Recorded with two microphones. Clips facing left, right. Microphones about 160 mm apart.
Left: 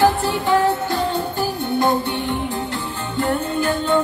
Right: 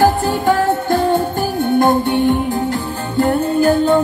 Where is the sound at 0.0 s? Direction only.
45° right (ahead or behind).